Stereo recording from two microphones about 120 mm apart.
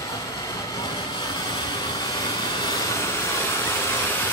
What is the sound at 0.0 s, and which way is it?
Vehicle, 30° left (ahead or behind).